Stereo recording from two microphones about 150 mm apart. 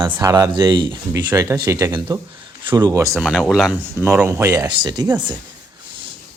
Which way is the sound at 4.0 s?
15° right (ahead or behind).